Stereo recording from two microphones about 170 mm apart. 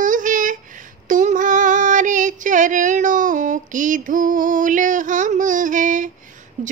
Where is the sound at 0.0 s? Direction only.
50° right (ahead or behind).